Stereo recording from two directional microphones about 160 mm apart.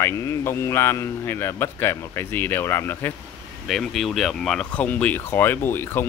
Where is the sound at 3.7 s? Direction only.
Centre (ahead or behind).